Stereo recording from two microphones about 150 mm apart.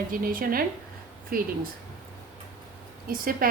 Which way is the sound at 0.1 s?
70° right (ahead or behind).